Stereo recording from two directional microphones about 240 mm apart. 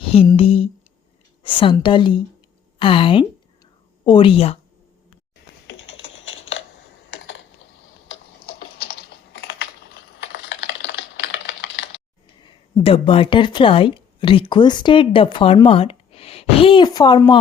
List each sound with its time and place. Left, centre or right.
0.0 s a sound: left
1.5 s a woman's voice: left
5.6 s typing: left
8.7 s typing: left
12.4 s speech: centre